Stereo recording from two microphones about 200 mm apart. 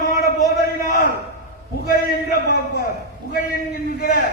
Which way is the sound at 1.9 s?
50° left (ahead or behind).